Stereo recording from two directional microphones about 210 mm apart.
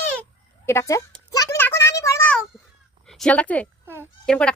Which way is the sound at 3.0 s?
5° left (ahead or behind).